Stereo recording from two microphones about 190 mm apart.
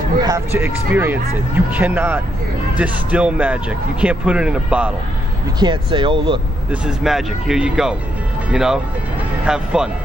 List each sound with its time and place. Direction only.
0.2 s speech: 15° right (ahead or behind)
5.6 s speech: 25° right (ahead or behind)
6.7 s speech: centre (ahead or behind)